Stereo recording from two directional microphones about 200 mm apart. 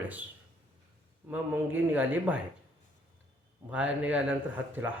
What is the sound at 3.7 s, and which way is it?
Speech, 5° right (ahead or behind).